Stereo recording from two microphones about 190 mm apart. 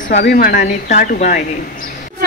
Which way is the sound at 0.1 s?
50° left (ahead or behind).